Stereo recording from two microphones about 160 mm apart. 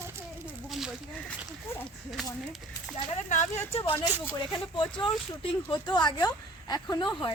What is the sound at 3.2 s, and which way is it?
Speech, 50° left (ahead or behind).